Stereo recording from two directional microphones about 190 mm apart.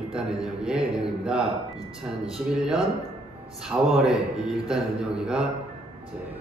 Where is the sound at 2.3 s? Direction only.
5° right (ahead or behind).